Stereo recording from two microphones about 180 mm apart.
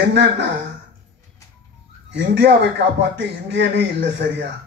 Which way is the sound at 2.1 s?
80° right.